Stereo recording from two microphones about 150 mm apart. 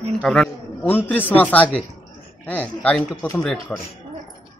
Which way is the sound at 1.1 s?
10° left (ahead or behind).